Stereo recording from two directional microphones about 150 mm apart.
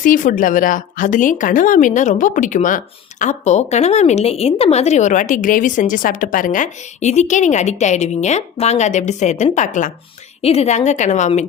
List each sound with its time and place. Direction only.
0.0 s speech: 60° left (ahead or behind)
10.4 s a woman's voice: 45° left (ahead or behind)